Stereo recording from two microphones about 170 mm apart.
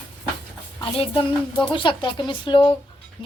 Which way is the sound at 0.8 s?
30° left (ahead or behind).